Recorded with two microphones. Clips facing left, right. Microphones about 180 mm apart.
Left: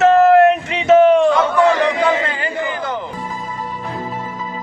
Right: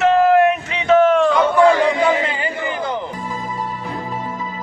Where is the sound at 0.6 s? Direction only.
20° left (ahead or behind).